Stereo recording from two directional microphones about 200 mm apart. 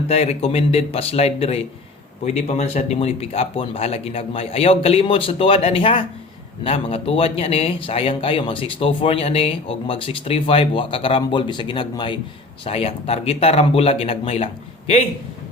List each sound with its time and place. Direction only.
0.1 s speech: 30° left (ahead or behind)